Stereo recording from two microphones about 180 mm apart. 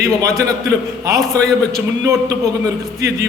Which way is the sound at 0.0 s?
15° right (ahead or behind).